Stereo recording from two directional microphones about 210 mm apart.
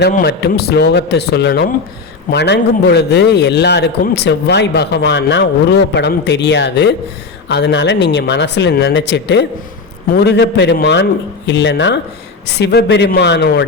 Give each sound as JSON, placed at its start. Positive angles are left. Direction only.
{"t": 0.0, "sound": "a man's voice", "side_deg": 50}